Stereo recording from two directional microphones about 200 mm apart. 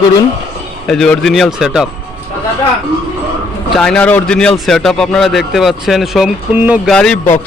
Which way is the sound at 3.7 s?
5° left (ahead or behind).